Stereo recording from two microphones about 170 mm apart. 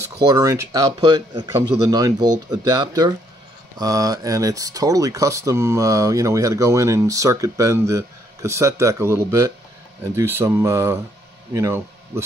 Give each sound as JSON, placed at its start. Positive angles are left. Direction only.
{"t": 0.0, "sound": "speech", "side_deg": -20}